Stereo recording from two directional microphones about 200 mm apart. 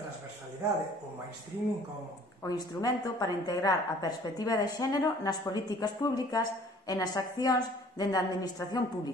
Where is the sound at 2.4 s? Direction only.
20° left (ahead or behind).